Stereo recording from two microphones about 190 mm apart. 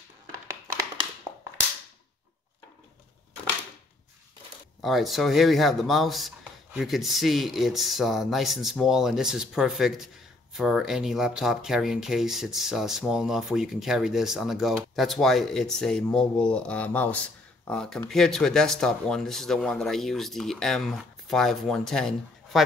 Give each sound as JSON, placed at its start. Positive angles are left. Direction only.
{"t": 4.8, "sound": "speech", "side_deg": 0}